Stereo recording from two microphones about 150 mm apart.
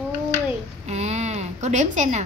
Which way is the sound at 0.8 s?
50° right (ahead or behind).